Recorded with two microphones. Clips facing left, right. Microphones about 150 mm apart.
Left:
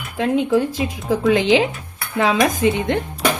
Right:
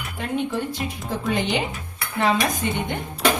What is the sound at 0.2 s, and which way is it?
Speech, 90° left.